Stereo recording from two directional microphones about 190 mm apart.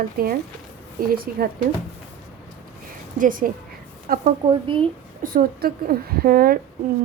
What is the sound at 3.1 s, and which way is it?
Speech, 45° right (ahead or behind).